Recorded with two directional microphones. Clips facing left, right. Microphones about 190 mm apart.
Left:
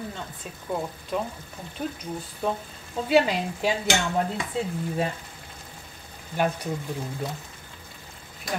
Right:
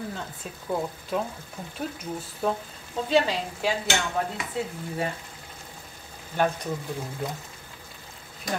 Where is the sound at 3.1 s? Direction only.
10° left (ahead or behind).